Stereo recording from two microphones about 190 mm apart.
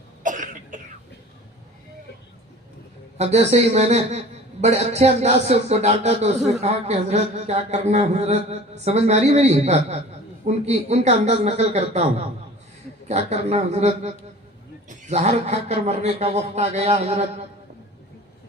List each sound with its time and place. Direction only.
0.2 s cough: 45° right (ahead or behind)
3.2 s speech: 35° right (ahead or behind)
13.1 s speech: 35° right (ahead or behind)